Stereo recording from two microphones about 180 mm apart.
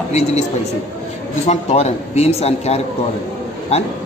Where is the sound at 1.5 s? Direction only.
35° left (ahead or behind).